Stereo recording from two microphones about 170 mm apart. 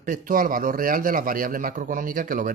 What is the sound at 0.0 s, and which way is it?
A man's voice, 50° right (ahead or behind).